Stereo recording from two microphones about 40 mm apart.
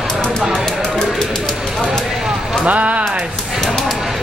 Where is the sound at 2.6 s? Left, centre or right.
Right.